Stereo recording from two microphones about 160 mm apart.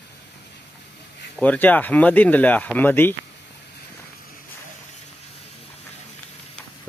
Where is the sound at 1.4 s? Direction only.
10° left (ahead or behind).